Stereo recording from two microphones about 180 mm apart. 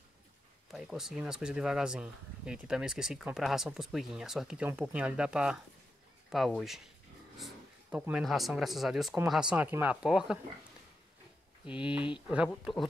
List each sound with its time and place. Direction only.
0.7 s speech: 5° right (ahead or behind)
7.3 s a sound: centre (ahead or behind)
8.0 s speech: 5° right (ahead or behind)
11.6 s speech: 30° left (ahead or behind)
12.3 s speech: 5° right (ahead or behind)